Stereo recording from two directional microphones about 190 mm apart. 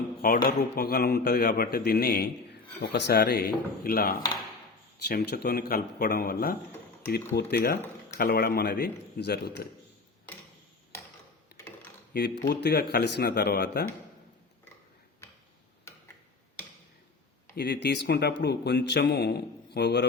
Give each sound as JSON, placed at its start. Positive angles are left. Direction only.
{"t": 0.2, "sound": "speech", "side_deg": 50}
{"t": 11.5, "sound": "typing", "side_deg": 10}
{"t": 12.1, "sound": "speech", "side_deg": 60}
{"t": 15.9, "sound": "tick-tock", "side_deg": 15}
{"t": 17.5, "sound": "speech", "side_deg": 55}